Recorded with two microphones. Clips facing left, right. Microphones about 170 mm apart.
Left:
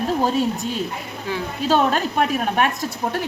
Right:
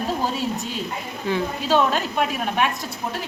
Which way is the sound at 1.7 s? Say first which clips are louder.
Left 2 dB; 45° left (ahead or behind).